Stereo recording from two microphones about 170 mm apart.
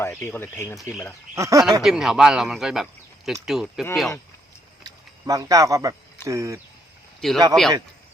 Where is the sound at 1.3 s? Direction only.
20° right (ahead or behind).